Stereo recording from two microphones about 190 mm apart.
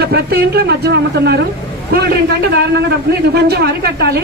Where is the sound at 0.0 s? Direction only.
55° right (ahead or behind).